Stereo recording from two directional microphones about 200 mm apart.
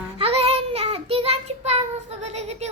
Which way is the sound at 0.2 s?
30° right (ahead or behind).